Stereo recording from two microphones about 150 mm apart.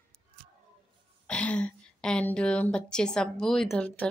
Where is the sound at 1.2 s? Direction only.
10° left (ahead or behind).